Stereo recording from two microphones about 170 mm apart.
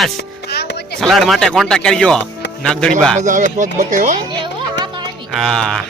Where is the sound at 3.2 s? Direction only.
50° right (ahead or behind).